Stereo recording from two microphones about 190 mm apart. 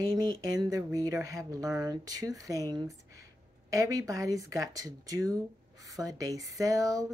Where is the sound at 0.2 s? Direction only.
20° right (ahead or behind).